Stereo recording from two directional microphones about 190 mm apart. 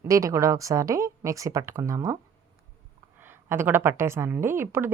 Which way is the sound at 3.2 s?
10° right (ahead or behind).